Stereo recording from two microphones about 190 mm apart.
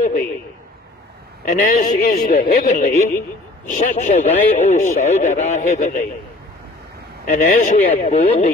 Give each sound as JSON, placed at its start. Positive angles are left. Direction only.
{"t": 0.0, "sound": "a sound", "side_deg": 45}
{"t": 1.4, "sound": "a man's voice", "side_deg": 45}
{"t": 7.4, "sound": "speech", "side_deg": 45}
{"t": 7.9, "sound": "a man's voice", "side_deg": 35}